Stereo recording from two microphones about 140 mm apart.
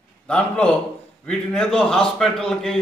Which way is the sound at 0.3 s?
10° left (ahead or behind).